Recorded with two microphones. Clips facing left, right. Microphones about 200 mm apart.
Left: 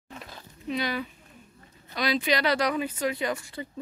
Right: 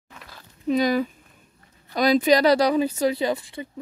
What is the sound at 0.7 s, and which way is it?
Speech, 40° right (ahead or behind).